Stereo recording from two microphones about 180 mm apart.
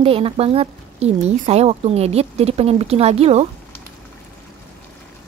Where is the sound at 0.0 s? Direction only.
30° right (ahead or behind).